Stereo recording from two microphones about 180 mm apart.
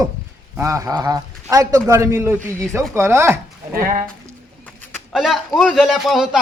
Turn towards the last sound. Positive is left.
turn(degrees=0)  # may be behind; listen again after turning